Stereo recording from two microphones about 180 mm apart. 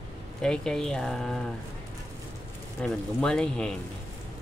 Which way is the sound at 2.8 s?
5° left (ahead or behind).